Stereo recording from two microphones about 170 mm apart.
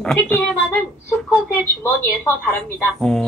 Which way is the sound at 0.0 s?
10° left (ahead or behind).